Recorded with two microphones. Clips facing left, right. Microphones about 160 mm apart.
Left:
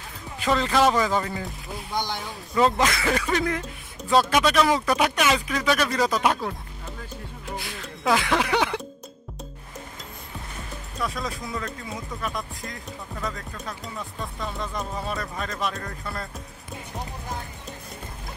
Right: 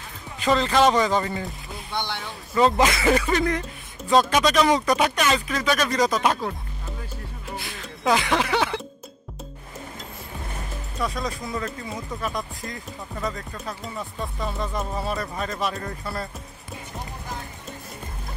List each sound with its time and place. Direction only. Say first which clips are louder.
0.4 s speech: right 2 dB; 5° left (ahead or behind)
2.0 s speech: left 1 dB; 40° left (ahead or behind)
2.5 s speech: right 2 dB; centre (ahead or behind)
7.8 s a sound: right 1 dB; centre (ahead or behind)
11.0 s speech: right 2 dB; centre (ahead or behind)